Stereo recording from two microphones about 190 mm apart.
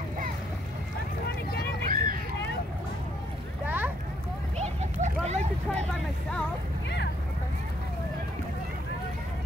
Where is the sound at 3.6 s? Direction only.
10° right (ahead or behind).